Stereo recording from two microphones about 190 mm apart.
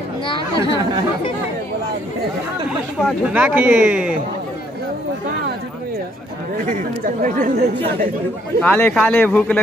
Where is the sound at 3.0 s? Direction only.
5° left (ahead or behind).